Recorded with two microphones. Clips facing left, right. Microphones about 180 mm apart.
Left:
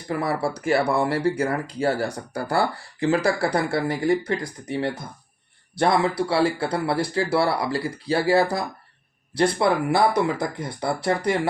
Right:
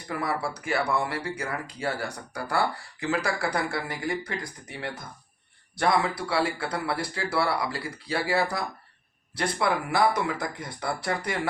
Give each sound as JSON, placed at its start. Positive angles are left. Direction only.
{"t": 0.1, "sound": "speech", "side_deg": 30}